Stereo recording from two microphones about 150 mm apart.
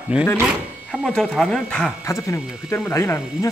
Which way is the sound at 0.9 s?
Centre (ahead or behind).